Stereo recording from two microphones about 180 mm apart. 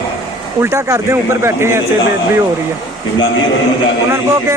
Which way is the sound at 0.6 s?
15° right (ahead or behind).